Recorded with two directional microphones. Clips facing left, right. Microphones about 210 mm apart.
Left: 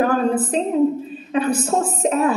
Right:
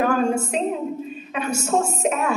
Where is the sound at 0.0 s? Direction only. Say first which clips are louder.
Left 2 dB; 35° left (ahead or behind).